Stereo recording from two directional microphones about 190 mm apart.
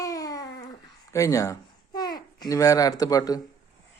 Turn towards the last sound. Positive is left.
turn(degrees=20)  # may be behind; listen again after turning